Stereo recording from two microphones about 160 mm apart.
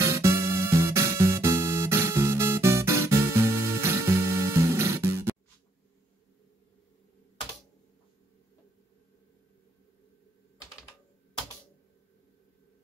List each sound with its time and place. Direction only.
0.0 s music: 20° right (ahead or behind)